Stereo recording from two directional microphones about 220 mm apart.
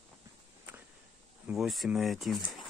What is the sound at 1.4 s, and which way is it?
Speech, centre (ahead or behind).